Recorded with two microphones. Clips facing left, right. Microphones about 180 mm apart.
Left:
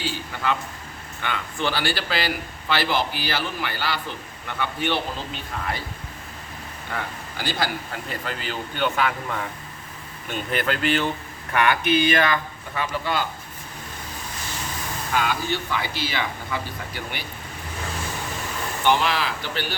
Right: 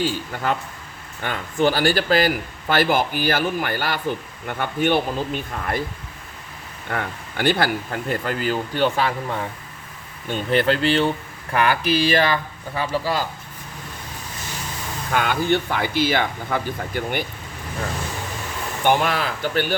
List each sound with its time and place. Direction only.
0.0 s speech: 45° right (ahead or behind)
6.9 s a man's voice: 55° right (ahead or behind); by 13.2 s 35° right (ahead or behind)
15.1 s speech: 55° right (ahead or behind)
18.8 s speech: 50° right (ahead or behind)